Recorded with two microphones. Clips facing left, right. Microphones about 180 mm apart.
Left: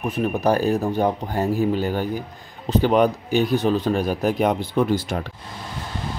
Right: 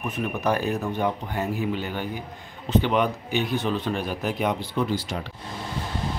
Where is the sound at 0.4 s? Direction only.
35° left (ahead or behind).